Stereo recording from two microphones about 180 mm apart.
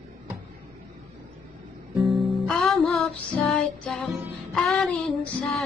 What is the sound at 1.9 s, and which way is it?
Music, centre (ahead or behind).